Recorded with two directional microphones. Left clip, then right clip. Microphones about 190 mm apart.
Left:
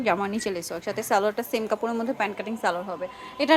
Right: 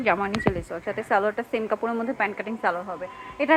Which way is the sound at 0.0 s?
20° left (ahead or behind).